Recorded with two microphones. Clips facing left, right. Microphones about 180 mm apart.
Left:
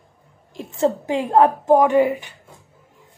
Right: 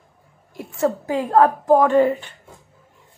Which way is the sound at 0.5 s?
20° left (ahead or behind).